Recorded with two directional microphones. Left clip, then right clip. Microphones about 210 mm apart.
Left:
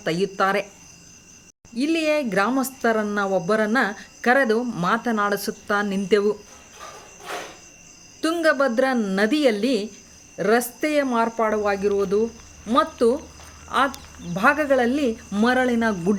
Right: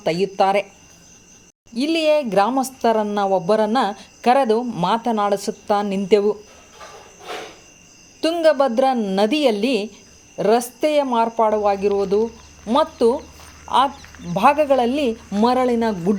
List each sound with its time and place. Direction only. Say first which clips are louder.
0.0 s speech: right 4 dB; 10° right (ahead or behind)
1.7 s speech: right 4 dB; 10° right (ahead or behind)
8.2 s speech: right 4 dB; 5° right (ahead or behind)
11.2 s speech: right 4 dB; 15° left (ahead or behind)
11.6 s speech: right 3 dB; 10° right (ahead or behind)